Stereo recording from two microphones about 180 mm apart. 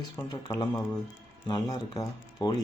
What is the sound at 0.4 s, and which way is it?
Speech, 20° left (ahead or behind).